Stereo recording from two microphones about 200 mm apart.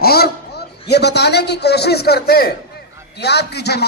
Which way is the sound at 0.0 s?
50° left (ahead or behind).